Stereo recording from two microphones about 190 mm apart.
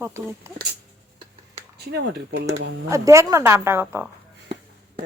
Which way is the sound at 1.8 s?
60° right (ahead or behind).